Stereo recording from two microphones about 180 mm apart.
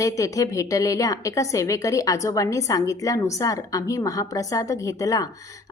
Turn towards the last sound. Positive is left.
turn(degrees=20)  # may be behind; listen again after turning